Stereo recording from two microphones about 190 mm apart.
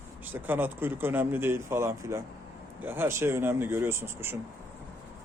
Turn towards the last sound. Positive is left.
turn(degrees=-10)  # may be behind; listen again after turning